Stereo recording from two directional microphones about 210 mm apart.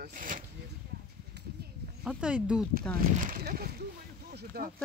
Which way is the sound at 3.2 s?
45° right (ahead or behind).